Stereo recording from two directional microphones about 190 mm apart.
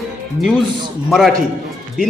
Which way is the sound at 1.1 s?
Centre (ahead or behind).